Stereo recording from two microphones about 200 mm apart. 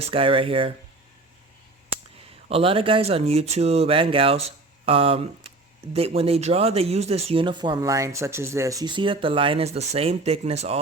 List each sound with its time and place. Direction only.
0.0 s speech: 25° right (ahead or behind)
2.1 s speech: 30° right (ahead or behind)